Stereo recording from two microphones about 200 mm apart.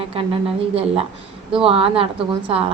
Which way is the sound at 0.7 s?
30° right (ahead or behind).